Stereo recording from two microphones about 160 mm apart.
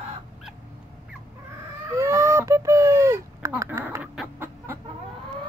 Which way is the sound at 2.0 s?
15° right (ahead or behind).